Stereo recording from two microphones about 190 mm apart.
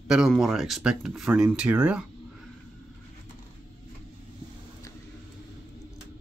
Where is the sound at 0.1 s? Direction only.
Centre (ahead or behind).